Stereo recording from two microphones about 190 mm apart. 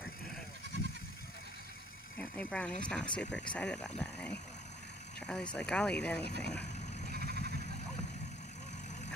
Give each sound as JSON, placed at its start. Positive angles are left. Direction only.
{"t": 2.1, "sound": "speech", "side_deg": 5}
{"t": 7.1, "sound": "vehicle", "side_deg": -55}